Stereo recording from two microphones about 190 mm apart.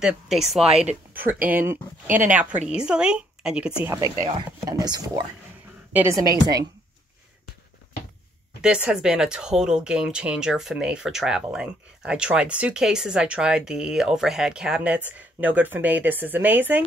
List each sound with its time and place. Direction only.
0.0 s speech: centre (ahead or behind)
3.8 s a woman's voice: 15° right (ahead or behind)
8.5 s speech: 5° right (ahead or behind)